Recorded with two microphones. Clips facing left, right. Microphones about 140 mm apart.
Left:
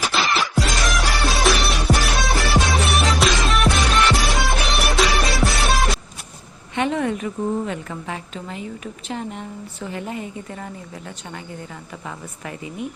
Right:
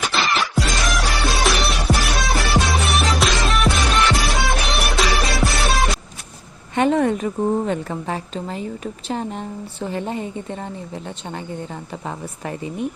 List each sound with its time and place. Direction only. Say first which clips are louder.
0.0 s music: even; centre (ahead or behind)
6.7 s a woman's voice: right 4 dB; 40° right (ahead or behind)
12.0 s a woman's voice: right 4 dB; 35° right (ahead or behind)